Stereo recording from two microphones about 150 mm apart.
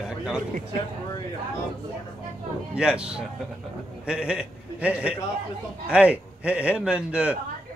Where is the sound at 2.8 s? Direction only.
5° right (ahead or behind).